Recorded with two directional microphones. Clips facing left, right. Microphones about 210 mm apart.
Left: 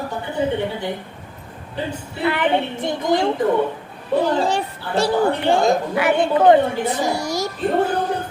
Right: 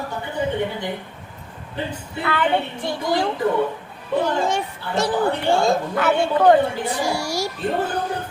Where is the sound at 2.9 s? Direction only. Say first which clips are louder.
Left 3 dB; 20° left (ahead or behind).